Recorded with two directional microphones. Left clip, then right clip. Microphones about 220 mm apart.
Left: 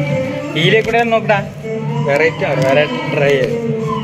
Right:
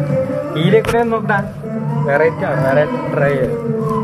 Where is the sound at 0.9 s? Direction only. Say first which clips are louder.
Left 2 dB; 65° left (ahead or behind).